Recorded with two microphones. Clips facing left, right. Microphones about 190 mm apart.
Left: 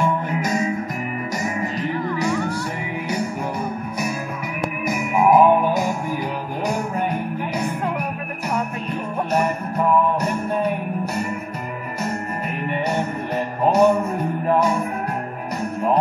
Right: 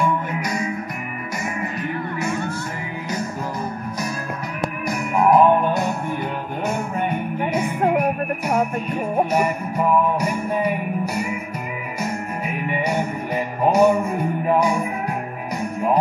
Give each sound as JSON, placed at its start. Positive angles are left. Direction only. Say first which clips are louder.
{"t": 0.5, "sound": "music", "louder": "left 4 dB", "side_deg": 25}
{"t": 4.8, "sound": "music", "louder": "left 1 dB", "side_deg": 5}
{"t": 7.8, "sound": "music", "louder": "right 6 dB", "side_deg": -60}
{"t": 9.3, "sound": "music", "louder": "even", "side_deg": -5}